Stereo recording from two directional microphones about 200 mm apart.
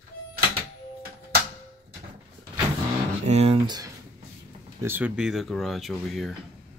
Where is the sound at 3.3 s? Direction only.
30° right (ahead or behind).